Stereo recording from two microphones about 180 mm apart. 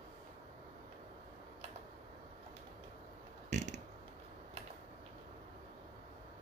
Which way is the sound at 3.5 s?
40° right (ahead or behind).